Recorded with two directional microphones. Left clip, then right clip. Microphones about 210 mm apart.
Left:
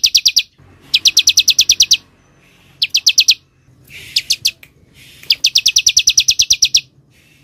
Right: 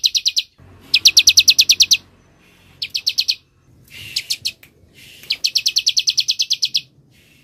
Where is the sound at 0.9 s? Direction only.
10° right (ahead or behind).